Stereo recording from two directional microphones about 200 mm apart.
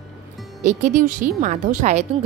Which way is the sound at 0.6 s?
35° right (ahead or behind).